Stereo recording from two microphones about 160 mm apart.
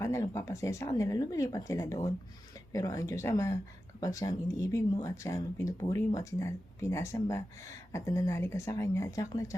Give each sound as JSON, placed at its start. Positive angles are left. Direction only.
{"t": 0.0, "sound": "speech", "side_deg": 20}